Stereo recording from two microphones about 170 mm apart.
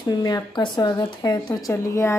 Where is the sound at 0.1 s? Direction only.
25° left (ahead or behind).